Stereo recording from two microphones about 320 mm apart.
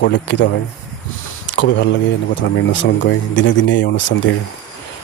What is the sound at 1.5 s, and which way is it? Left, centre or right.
Speech, left.